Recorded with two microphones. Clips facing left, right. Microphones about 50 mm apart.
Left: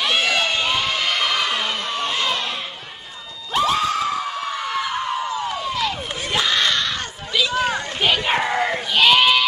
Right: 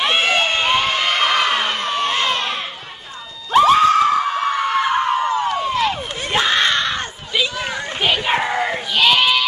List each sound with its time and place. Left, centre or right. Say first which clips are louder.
0.0 s crowd: right 3 dB; right
3.5 s screaming: right 8 dB; right
8.0 s a sound: right 2 dB; centre